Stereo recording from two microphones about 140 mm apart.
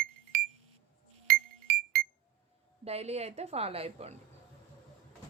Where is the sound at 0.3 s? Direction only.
90° right.